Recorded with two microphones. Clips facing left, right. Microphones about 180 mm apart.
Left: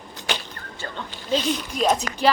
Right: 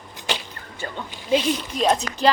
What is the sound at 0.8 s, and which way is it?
Speech, 20° right (ahead or behind).